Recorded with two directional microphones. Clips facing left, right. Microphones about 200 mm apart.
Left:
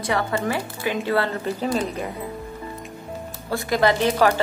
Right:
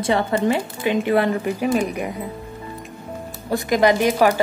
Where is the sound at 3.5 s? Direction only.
15° right (ahead or behind).